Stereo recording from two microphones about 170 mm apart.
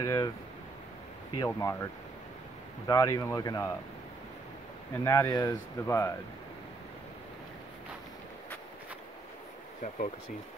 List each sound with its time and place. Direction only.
0.0 s speech: 20° left (ahead or behind)
1.4 s speech: 20° left (ahead or behind)
2.9 s speech: 20° left (ahead or behind)
4.9 s speech: 15° left (ahead or behind)